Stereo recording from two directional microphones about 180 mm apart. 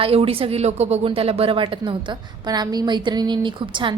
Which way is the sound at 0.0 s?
30° right (ahead or behind).